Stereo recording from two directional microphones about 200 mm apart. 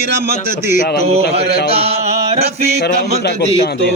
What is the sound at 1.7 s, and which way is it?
Chant, 30° right (ahead or behind).